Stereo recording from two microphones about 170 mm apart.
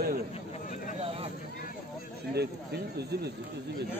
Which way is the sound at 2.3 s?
70° right (ahead or behind).